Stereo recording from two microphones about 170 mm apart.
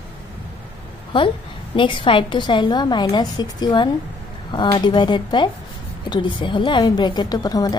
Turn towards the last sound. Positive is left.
turn(degrees=20)  # may be behind; listen again after turning